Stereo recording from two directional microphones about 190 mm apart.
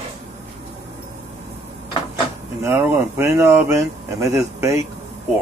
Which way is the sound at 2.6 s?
10° right (ahead or behind).